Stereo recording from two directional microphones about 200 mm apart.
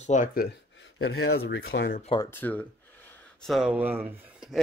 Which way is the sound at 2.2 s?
10° left (ahead or behind).